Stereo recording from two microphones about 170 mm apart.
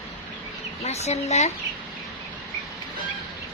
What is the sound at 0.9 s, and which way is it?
Speech, 40° left (ahead or behind).